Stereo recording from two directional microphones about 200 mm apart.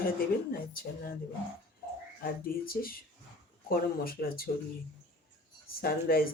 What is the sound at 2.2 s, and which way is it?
Speech, 45° left (ahead or behind).